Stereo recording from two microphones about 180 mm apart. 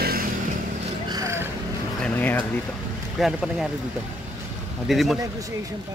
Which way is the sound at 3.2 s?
5° right (ahead or behind).